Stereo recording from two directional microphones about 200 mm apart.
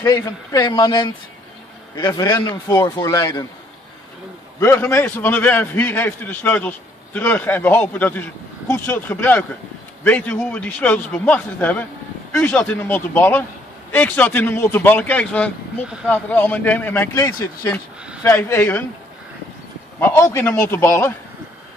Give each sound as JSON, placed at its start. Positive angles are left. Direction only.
{"t": 0.0, "sound": "a man's voice", "side_deg": 20}
{"t": 4.6, "sound": "a man's voice", "side_deg": 10}
{"t": 20.0, "sound": "a man's voice", "side_deg": 10}